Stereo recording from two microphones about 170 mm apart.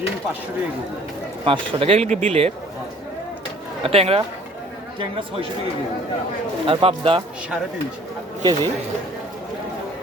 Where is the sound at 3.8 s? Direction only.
35° right (ahead or behind).